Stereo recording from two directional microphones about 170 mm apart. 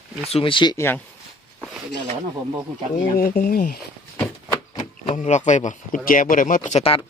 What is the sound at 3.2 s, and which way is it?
Speech, 65° left (ahead or behind).